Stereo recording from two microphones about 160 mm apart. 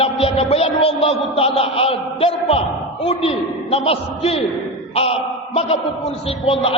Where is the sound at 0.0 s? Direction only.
40° left (ahead or behind).